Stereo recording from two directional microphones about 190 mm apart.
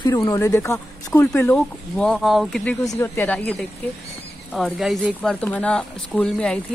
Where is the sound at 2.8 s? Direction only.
15° left (ahead or behind).